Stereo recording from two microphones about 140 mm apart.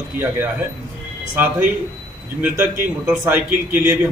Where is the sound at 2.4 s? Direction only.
15° right (ahead or behind).